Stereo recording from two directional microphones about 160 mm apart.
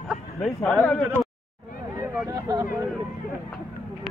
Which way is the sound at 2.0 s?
20° right (ahead or behind).